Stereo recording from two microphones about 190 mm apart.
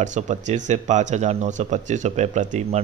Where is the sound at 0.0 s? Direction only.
40° right (ahead or behind).